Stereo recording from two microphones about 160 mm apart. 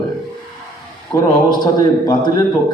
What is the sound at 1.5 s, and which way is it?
Speech, 25° left (ahead or behind).